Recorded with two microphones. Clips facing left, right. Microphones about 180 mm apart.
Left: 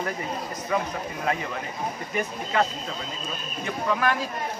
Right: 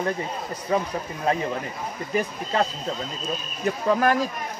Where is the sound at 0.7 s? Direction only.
35° right (ahead or behind).